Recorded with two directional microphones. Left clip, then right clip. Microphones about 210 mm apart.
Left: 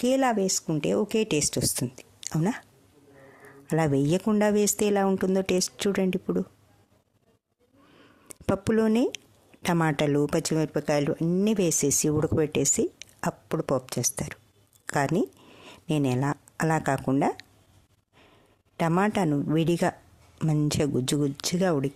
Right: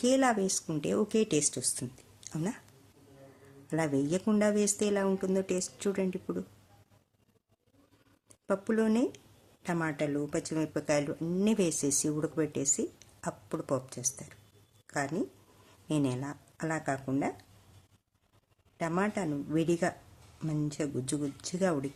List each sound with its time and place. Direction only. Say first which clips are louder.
0.0 s speech: left 3 dB; 35° left (ahead or behind)
3.7 s speech: left 6 dB; 40° left (ahead or behind)
8.3 s speech: left 5 dB; 45° left (ahead or behind)
18.8 s speech: left 7 dB; 45° left (ahead or behind)